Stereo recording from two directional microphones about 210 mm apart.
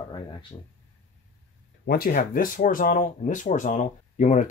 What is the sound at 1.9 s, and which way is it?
Speech, 45° left (ahead or behind).